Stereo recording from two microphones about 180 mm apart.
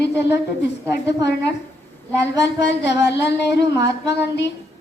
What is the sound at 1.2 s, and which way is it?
Speech, 70° left (ahead or behind).